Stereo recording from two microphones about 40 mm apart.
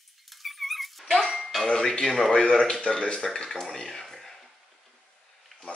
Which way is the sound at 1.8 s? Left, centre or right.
Centre.